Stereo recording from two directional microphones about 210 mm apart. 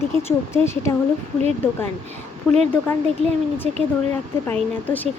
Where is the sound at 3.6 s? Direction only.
30° right (ahead or behind).